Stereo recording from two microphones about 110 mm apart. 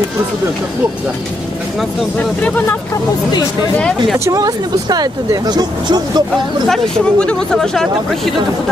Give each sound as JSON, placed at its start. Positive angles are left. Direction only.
{"t": 2.1, "sound": "speech", "side_deg": 15}
{"t": 4.2, "sound": "speech", "side_deg": -35}
{"t": 6.7, "sound": "speech", "side_deg": 5}